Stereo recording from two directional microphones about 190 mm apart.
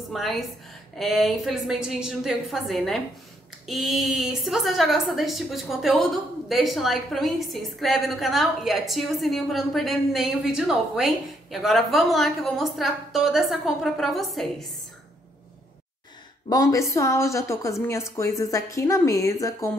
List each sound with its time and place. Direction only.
0.1 s a woman's voice: centre (ahead or behind)
16.4 s a woman's voice: 20° left (ahead or behind)